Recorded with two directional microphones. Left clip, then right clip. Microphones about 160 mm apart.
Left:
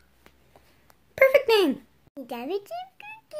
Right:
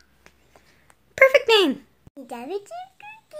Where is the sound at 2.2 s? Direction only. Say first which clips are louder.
Even; 50° left (ahead or behind).